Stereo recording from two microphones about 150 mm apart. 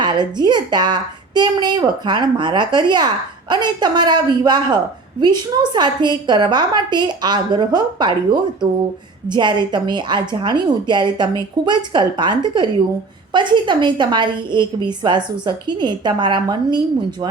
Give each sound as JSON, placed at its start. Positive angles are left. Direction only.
{"t": 0.0, "sound": "a woman's voice", "side_deg": -30}